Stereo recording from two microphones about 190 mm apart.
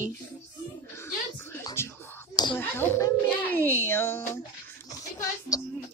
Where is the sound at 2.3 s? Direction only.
20° left (ahead or behind).